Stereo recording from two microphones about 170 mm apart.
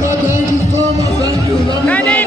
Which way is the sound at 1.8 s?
10° left (ahead or behind).